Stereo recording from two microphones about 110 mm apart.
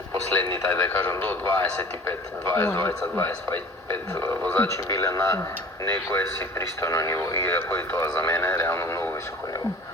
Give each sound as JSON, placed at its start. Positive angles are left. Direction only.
{"t": 0.7, "sound": "speech", "side_deg": 25}